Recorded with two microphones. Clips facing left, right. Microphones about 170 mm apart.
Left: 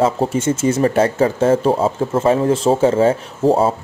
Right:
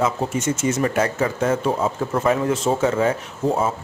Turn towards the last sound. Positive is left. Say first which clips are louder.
# left 6 dB
turn(degrees=35)  # may be behind; listen again after turning